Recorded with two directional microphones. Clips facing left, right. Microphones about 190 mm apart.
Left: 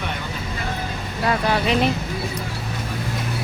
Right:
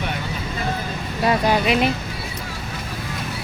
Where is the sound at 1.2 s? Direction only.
15° right (ahead or behind).